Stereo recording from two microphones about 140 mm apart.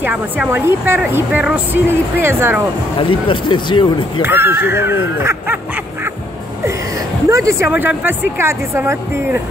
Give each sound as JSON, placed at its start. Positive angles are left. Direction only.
{"t": 0.0, "sound": "speech", "side_deg": -10}
{"t": 3.0, "sound": "speech", "side_deg": 35}
{"t": 4.2, "sound": "speech", "side_deg": -15}
{"t": 7.2, "sound": "speech", "side_deg": -20}